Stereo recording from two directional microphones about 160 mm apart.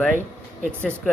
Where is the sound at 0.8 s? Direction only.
10° left (ahead or behind).